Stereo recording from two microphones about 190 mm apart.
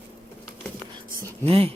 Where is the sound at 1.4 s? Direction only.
30° right (ahead or behind).